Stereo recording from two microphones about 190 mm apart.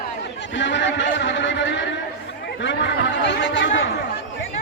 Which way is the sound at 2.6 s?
70° left (ahead or behind).